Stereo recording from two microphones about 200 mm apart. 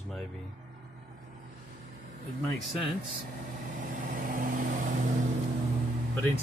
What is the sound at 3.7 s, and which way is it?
Vehicle, 40° right (ahead or behind).